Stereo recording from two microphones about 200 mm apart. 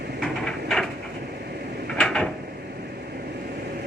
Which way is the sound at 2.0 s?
5° left (ahead or behind).